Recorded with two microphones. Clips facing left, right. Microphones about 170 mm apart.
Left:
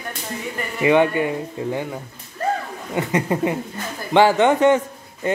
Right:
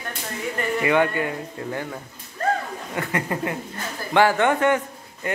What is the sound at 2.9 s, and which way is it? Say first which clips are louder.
Speech: left 6 dB; 20° left (ahead or behind).